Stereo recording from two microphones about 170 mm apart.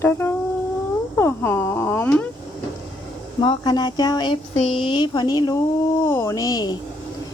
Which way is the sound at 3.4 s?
25° left (ahead or behind).